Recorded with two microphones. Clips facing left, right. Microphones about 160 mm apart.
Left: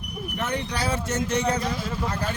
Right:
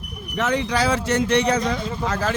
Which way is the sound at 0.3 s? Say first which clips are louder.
Right 7 dB; 90° right.